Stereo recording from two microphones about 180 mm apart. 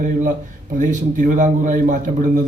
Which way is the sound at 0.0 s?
45° right (ahead or behind).